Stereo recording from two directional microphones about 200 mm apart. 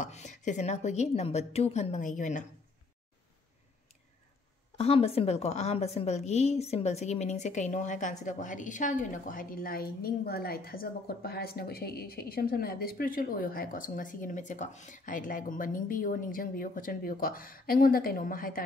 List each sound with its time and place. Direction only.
0.0 s a woman's voice: 35° left (ahead or behind)
4.7 s a woman's voice: 30° left (ahead or behind)